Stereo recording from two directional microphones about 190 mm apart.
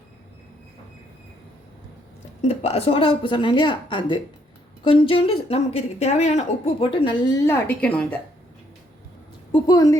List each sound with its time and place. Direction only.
2.4 s a woman's voice: 35° left (ahead or behind)
7.4 s a woman's voice: 10° left (ahead or behind)
9.5 s a woman's voice: 20° left (ahead or behind)